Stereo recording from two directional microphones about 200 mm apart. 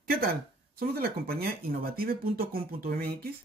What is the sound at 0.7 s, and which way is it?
Speech, 50° right (ahead or behind).